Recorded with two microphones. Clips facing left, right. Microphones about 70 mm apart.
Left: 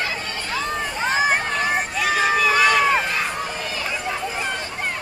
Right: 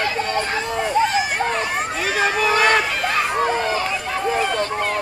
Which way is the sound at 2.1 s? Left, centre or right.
Right.